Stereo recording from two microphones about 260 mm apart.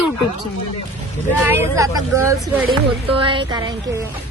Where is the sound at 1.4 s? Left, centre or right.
Centre.